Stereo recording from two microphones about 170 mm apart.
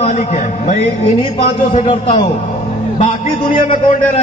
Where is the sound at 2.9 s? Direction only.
45° left (ahead or behind).